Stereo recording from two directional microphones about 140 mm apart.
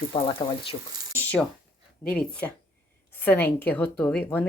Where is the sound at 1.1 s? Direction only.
10° left (ahead or behind).